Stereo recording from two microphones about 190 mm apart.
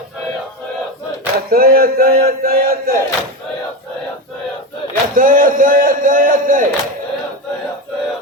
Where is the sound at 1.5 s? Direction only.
50° right (ahead or behind).